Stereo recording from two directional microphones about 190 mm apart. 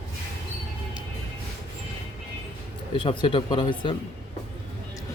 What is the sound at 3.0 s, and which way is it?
Speech, 30° left (ahead or behind).